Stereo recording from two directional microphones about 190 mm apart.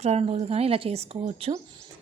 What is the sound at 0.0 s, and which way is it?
Speech, 35° right (ahead or behind).